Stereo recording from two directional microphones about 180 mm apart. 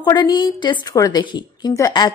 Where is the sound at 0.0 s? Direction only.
25° left (ahead or behind).